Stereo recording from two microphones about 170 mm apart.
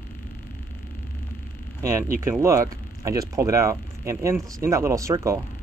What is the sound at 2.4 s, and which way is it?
Speech, 20° right (ahead or behind).